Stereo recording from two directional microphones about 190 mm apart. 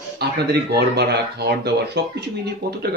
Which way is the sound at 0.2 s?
60° right (ahead or behind).